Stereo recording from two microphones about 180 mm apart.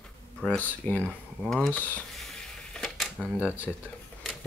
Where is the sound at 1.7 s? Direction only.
10° left (ahead or behind).